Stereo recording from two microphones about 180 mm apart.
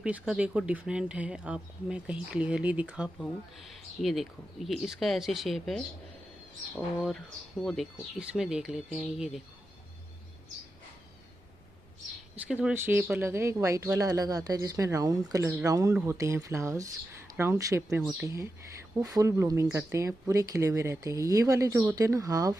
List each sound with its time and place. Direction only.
0.0 s speech: 5° right (ahead or behind)
7.1 s speech: centre (ahead or behind)
12.4 s speech: 10° right (ahead or behind)